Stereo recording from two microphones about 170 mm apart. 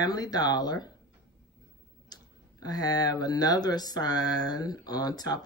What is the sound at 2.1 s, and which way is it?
Speech, 25° left (ahead or behind).